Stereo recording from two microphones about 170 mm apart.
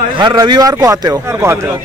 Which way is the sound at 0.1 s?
25° right (ahead or behind).